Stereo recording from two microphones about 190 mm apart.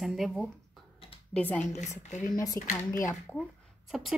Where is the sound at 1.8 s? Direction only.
40° left (ahead or behind).